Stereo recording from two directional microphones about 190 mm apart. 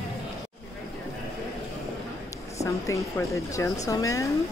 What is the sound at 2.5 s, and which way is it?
Speech, 15° left (ahead or behind).